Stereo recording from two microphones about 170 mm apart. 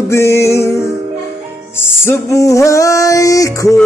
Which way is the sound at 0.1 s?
15° left (ahead or behind).